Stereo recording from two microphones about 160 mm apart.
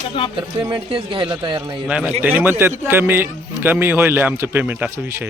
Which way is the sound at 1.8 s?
5° right (ahead or behind).